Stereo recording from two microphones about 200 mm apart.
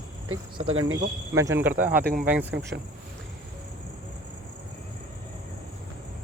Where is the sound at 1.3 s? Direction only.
15° right (ahead or behind).